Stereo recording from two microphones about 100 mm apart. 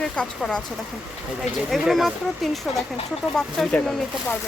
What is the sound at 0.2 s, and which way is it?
Speech, 10° left (ahead or behind).